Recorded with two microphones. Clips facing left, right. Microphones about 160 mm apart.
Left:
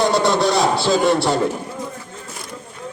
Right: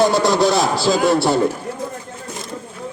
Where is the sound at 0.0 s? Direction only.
Centre (ahead or behind).